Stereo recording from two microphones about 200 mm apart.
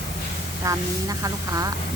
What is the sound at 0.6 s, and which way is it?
Speech, 15° right (ahead or behind).